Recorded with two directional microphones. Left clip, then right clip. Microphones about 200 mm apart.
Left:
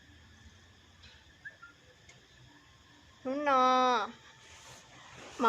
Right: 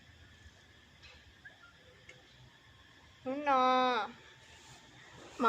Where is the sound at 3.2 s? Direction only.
45° left (ahead or behind).